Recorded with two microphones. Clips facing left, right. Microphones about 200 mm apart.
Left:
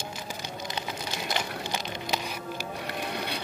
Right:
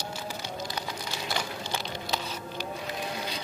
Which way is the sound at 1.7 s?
15° left (ahead or behind).